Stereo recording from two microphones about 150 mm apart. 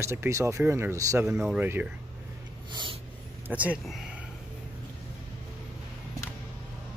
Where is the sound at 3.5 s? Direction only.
10° right (ahead or behind).